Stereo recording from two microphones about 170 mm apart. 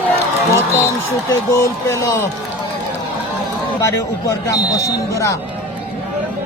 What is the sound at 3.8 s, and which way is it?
Speech, 15° left (ahead or behind).